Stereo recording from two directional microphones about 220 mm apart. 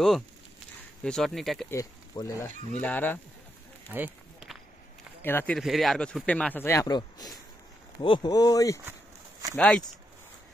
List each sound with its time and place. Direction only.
1.0 s speech: centre (ahead or behind)
1.7 s speech: 15° left (ahead or behind)
3.9 s run: 5° right (ahead or behind)
5.2 s speech: 10° left (ahead or behind)
9.6 s speech: 5° left (ahead or behind)